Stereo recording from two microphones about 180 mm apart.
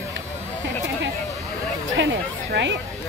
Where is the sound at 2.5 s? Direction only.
75° right (ahead or behind).